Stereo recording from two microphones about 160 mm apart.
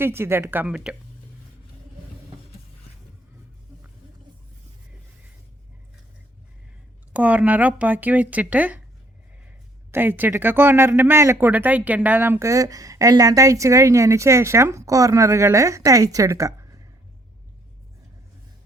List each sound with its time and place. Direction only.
0.0 s speech: 15° right (ahead or behind)
7.1 s speech: 10° right (ahead or behind)
9.9 s speech: 15° right (ahead or behind)